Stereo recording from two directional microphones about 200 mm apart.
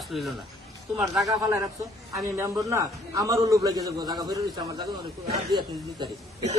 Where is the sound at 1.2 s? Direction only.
15° right (ahead or behind).